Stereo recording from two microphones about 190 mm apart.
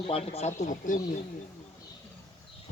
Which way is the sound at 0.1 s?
30° left (ahead or behind).